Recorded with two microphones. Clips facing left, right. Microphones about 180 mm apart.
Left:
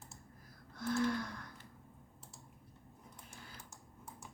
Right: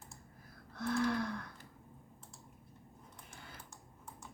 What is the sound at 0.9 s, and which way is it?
Gasp, 60° right (ahead or behind).